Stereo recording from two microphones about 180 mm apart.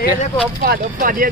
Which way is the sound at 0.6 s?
50° right (ahead or behind).